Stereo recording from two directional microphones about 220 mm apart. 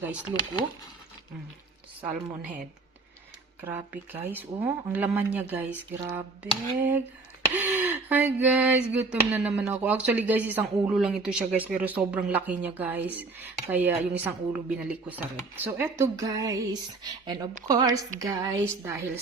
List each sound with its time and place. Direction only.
2.0 s speech: 5° right (ahead or behind)
3.6 s speech: 10° right (ahead or behind)